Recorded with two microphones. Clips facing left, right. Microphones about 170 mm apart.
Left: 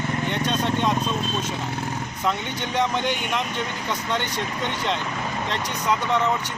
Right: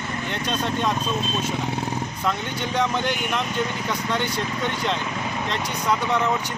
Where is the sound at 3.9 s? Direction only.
10° right (ahead or behind).